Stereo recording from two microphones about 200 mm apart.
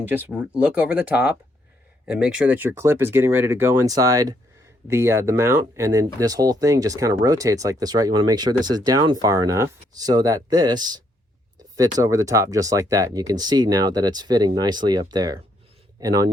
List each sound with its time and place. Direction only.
0.1 s speech: 10° right (ahead or behind)